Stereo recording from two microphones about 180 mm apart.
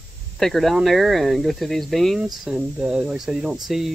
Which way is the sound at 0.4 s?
Centre (ahead or behind).